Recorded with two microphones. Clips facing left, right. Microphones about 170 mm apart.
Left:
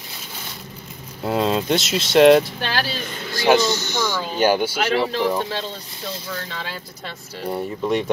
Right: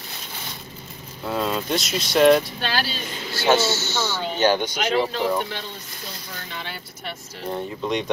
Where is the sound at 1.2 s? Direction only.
25° left (ahead or behind).